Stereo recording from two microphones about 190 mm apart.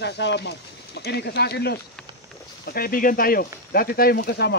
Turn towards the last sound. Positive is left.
turn(degrees=60)  # may be behind; listen again after turning